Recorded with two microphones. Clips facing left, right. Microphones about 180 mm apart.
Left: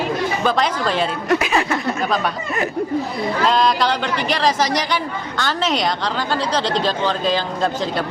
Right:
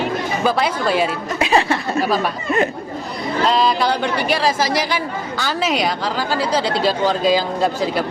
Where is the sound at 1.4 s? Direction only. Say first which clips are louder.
Right 3 dB; 30° right (ahead or behind).